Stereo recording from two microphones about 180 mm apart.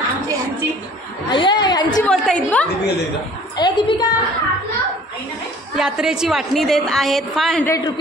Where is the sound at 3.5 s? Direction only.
25° left (ahead or behind).